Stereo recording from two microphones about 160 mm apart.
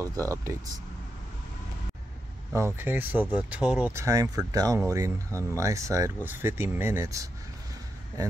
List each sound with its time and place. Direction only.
0.0 s speech: 20° right (ahead or behind)
2.5 s speech: 15° right (ahead or behind)
3.9 s speech: 20° right (ahead or behind)